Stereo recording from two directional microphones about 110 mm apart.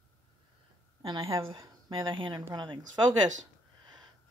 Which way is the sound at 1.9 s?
50° right (ahead or behind).